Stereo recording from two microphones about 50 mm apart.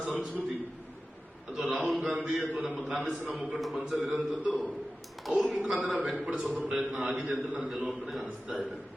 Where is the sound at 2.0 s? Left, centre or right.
Centre.